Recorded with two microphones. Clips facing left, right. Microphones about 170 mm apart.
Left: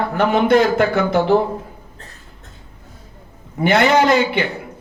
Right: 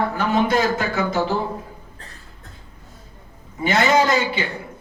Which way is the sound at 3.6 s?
60° left (ahead or behind).